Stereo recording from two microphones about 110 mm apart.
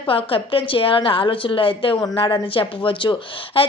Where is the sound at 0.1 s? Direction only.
55° left (ahead or behind).